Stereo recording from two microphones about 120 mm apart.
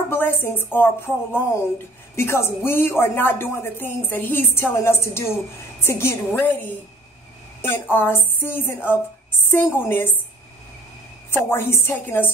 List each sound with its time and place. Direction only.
0.1 s a woman's voice: 15° left (ahead or behind)
7.6 s speech: 15° left (ahead or behind)
11.2 s speech: 20° left (ahead or behind)